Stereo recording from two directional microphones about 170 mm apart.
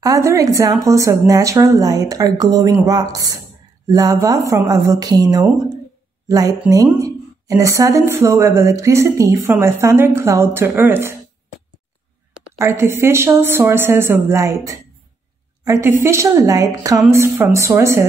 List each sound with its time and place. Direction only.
0.0 s a woman's voice: 20° right (ahead or behind)
12.5 s a woman's voice: 15° right (ahead or behind)